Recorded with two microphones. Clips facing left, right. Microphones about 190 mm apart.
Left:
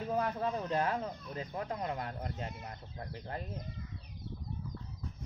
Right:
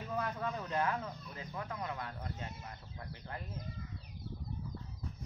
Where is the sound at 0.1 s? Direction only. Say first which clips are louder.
Left 4 dB; 35° left (ahead or behind).